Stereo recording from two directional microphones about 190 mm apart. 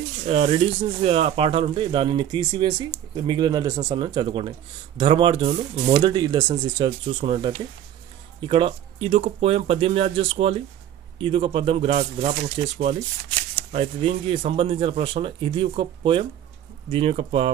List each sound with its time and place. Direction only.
0.3 s speech: 30° right (ahead or behind)